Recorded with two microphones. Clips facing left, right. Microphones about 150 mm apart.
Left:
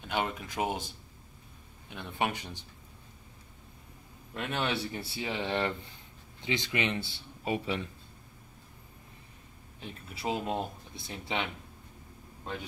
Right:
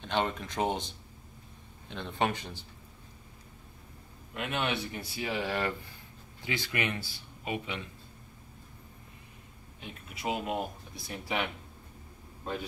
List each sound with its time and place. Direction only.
0.0 s speech: 10° left (ahead or behind)
1.9 s speech: 10° left (ahead or behind)
4.3 s speech: 35° left (ahead or behind)
9.8 s speech: 30° left (ahead or behind)